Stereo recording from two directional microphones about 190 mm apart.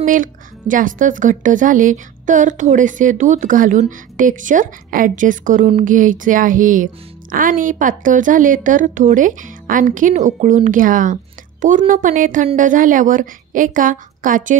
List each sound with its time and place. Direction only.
0.0 s speech: 45° right (ahead or behind)